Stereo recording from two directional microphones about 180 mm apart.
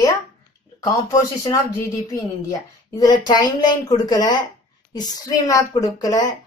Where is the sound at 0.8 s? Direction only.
20° left (ahead or behind).